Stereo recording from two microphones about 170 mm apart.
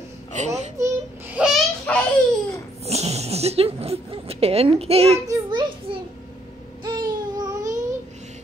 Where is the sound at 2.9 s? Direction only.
40° right (ahead or behind).